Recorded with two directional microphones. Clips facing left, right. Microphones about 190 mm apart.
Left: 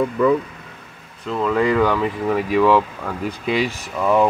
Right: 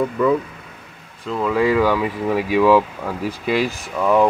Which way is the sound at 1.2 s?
5° right (ahead or behind).